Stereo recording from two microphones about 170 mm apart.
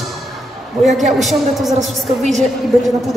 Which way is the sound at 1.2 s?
Centre (ahead or behind).